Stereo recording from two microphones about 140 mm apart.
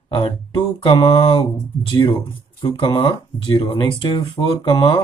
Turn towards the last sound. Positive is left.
turn(degrees=35)  # may be behind; listen again after turning